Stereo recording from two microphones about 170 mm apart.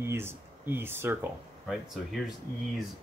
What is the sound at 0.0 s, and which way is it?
Speech, 15° right (ahead or behind).